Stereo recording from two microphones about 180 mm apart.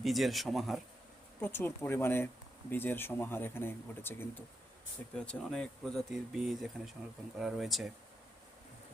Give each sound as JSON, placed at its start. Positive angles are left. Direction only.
{"t": 0.0, "sound": "speech", "side_deg": 0}
{"t": 1.4, "sound": "speech", "side_deg": 10}